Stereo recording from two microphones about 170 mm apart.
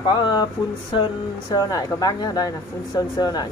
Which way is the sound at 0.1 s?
25° left (ahead or behind).